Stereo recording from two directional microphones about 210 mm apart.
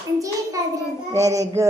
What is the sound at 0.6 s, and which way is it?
Child singing, 15° right (ahead or behind).